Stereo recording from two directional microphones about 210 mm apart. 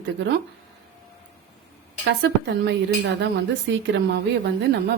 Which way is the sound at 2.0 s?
50° right (ahead or behind).